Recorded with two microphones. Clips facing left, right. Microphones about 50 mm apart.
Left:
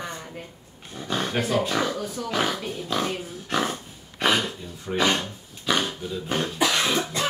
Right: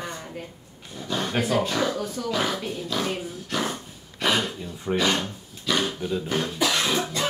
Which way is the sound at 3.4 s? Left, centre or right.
Left.